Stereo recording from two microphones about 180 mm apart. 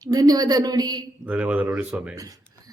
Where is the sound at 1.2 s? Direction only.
10° right (ahead or behind).